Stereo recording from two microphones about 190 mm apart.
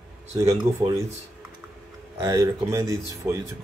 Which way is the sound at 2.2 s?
15° right (ahead or behind).